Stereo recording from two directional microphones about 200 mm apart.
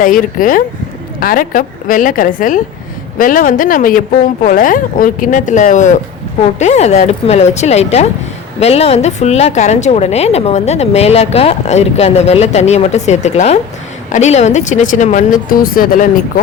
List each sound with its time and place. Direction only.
0.0 s a woman's voice: 45° left (ahead or behind)